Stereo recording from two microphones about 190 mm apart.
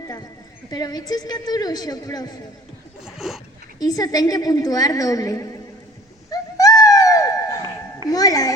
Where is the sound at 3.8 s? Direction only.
20° left (ahead or behind).